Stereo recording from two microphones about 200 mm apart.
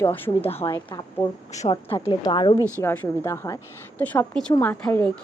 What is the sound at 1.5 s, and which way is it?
Speech, 35° left (ahead or behind).